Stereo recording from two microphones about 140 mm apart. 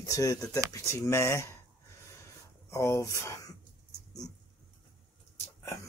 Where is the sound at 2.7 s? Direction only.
20° left (ahead or behind).